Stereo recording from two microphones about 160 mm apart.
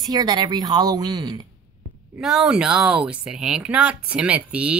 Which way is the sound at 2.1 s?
5° right (ahead or behind).